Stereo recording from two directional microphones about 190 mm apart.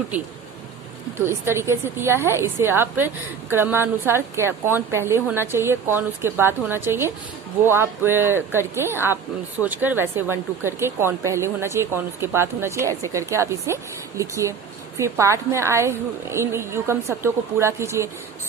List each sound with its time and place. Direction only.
1.2 s speech: 15° right (ahead or behind)